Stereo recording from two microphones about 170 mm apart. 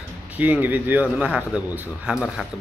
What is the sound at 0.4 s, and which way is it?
Speech, 10° right (ahead or behind).